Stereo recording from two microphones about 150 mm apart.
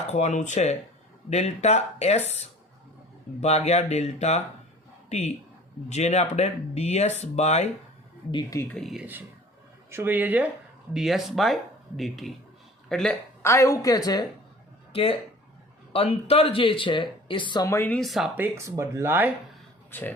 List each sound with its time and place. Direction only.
0.1 s a man's voice: 50° left (ahead or behind)
8.3 s speech: 30° left (ahead or behind)
8.5 s speech: 10° left (ahead or behind)
8.8 s speech: centre (ahead or behind)
9.9 s speech: 15° right (ahead or behind); by 13.1 s 5° left (ahead or behind)
13.4 s a woman's voice: 20° left (ahead or behind)
14.9 s speech: 40° left (ahead or behind)
17.7 s speech: 15° left (ahead or behind)
17.9 s speech: centre (ahead or behind)
18.3 s speech: 15° right (ahead or behind)
19.9 s speech: 15° left (ahead or behind)